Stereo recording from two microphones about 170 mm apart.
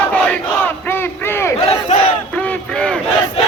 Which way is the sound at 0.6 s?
15° left (ahead or behind).